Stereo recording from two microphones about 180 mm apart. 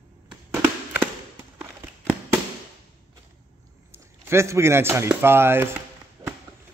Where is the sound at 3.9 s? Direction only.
15° right (ahead or behind).